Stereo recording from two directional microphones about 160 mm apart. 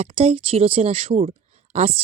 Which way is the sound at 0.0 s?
35° right (ahead or behind).